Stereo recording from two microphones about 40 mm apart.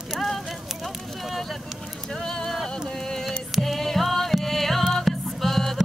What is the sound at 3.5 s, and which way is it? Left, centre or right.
Music, centre.